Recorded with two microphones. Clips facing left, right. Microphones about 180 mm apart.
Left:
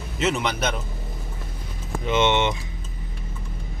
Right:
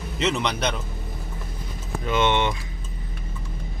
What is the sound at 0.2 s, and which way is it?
Speech, 5° left (ahead or behind).